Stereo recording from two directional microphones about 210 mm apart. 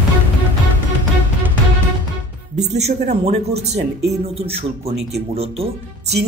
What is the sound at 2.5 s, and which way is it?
Speech, 30° right (ahead or behind).